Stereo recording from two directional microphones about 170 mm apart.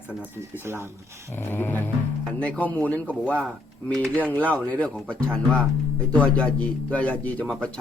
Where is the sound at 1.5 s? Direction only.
10° left (ahead or behind).